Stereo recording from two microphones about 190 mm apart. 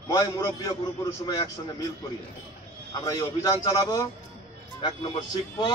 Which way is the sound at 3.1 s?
20° left (ahead or behind).